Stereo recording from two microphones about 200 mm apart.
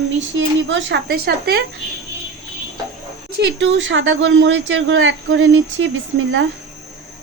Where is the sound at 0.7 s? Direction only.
65° right (ahead or behind).